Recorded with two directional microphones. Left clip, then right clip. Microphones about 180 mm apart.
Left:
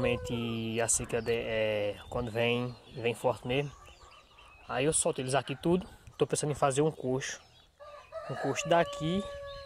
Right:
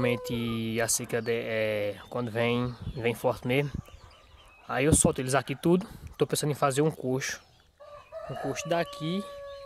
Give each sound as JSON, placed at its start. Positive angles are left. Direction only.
{"t": 0.0, "sound": "speech", "side_deg": -25}
{"t": 4.6, "sound": "speech", "side_deg": -30}
{"t": 8.5, "sound": "speech", "side_deg": -10}